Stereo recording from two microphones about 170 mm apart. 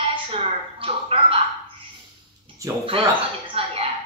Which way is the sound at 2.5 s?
30° right (ahead or behind).